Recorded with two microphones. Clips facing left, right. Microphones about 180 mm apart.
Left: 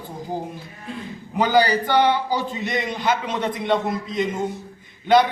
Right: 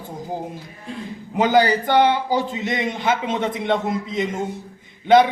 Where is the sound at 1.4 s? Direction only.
20° right (ahead or behind).